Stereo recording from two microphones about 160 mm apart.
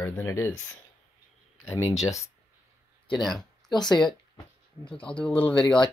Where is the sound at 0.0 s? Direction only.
15° left (ahead or behind).